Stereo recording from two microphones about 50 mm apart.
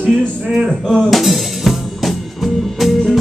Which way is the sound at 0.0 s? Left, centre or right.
Centre.